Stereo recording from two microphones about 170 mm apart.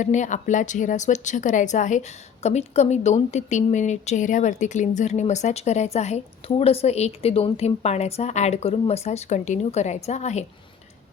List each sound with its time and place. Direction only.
0.0 s speech: 45° left (ahead or behind)